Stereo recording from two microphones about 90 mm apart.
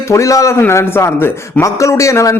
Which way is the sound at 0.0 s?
35° left (ahead or behind).